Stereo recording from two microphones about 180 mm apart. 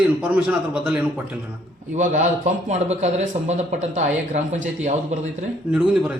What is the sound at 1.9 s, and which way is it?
Speech, 45° right (ahead or behind).